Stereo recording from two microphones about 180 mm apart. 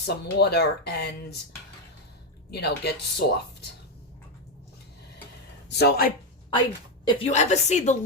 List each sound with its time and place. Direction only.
0.0 s speech: 65° left (ahead or behind)
2.5 s speech: 65° left (ahead or behind)
5.7 s speech: 65° left (ahead or behind)
7.0 s a woman's voice: 35° left (ahead or behind)